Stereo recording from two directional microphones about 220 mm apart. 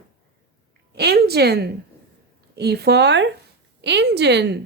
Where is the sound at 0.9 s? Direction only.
45° right (ahead or behind).